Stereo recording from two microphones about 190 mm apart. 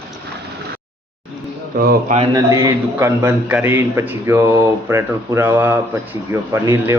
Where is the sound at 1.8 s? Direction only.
55° right (ahead or behind).